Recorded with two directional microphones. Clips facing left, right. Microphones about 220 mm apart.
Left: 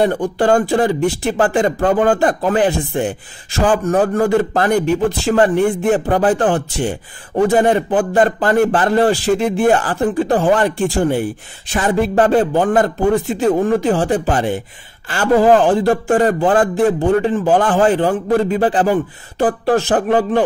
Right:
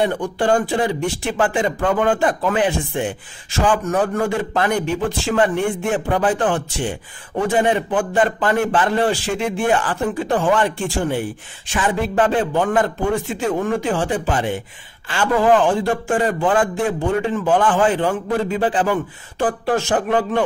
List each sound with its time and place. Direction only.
0.0 s a man's voice: 40° left (ahead or behind)